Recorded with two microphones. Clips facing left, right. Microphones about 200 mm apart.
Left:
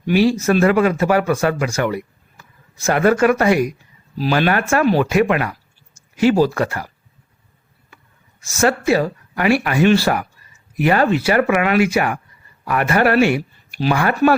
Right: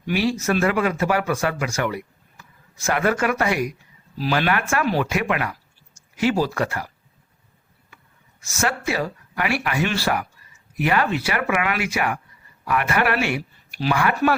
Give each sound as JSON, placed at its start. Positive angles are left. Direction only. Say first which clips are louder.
{"t": 0.1, "sound": "speech", "louder": "left 6 dB", "side_deg": 35}
{"t": 8.6, "sound": "speech", "louder": "left 8 dB", "side_deg": 35}
{"t": 13.7, "sound": "a sound", "louder": "left 4 dB", "side_deg": 25}
{"t": 14.0, "sound": "speech", "louder": "left 5 dB", "side_deg": 35}